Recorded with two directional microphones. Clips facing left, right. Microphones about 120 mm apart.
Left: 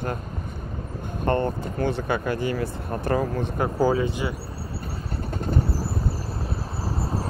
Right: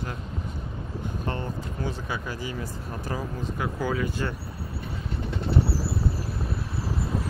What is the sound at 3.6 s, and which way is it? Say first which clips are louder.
Speech: left 7 dB; 35° left (ahead or behind).